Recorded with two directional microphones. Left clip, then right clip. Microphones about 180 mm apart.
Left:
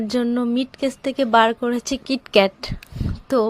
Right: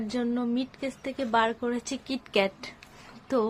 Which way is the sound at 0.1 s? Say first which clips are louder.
Left 8 dB; 40° left (ahead or behind).